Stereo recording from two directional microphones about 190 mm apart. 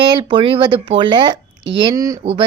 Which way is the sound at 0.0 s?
25° right (ahead or behind).